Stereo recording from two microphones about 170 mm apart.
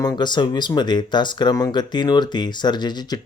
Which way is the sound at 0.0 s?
25° left (ahead or behind).